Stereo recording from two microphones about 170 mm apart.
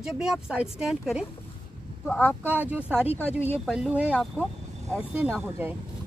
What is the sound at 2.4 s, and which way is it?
Speech, 10° right (ahead or behind).